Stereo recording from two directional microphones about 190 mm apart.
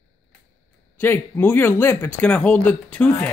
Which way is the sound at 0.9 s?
10° left (ahead or behind).